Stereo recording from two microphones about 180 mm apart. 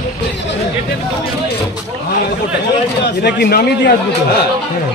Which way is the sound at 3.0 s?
65° left (ahead or behind).